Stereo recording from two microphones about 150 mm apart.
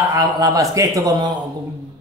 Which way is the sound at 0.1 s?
25° right (ahead or behind).